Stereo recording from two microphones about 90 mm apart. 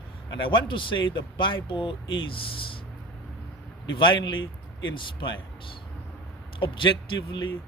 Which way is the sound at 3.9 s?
60° left (ahead or behind).